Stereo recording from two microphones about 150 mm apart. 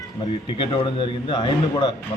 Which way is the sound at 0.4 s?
35° left (ahead or behind).